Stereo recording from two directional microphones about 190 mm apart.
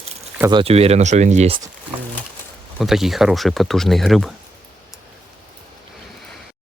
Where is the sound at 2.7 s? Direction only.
Centre (ahead or behind).